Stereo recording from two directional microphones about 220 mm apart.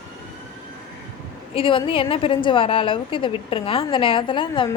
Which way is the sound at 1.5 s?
25° left (ahead or behind).